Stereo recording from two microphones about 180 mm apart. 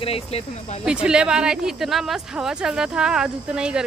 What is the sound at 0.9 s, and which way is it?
Speech, 5° right (ahead or behind).